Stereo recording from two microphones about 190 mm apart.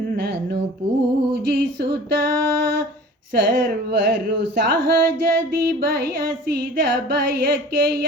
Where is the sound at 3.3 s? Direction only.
50° right (ahead or behind).